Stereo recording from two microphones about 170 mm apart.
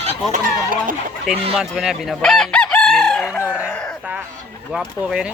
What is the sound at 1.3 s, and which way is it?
Speech, 35° right (ahead or behind).